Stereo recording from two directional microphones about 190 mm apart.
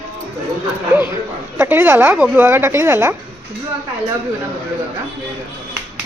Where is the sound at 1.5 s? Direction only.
10° right (ahead or behind).